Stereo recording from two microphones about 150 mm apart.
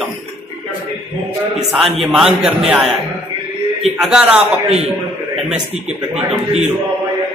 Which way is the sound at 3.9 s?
5° right (ahead or behind).